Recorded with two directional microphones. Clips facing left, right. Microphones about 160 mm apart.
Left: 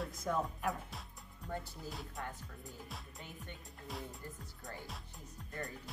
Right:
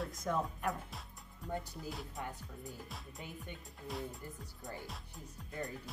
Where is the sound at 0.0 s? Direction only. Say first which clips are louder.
Even; centre (ahead or behind).